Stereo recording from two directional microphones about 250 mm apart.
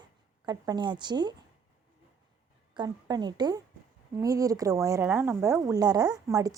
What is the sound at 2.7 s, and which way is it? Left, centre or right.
Speech, centre.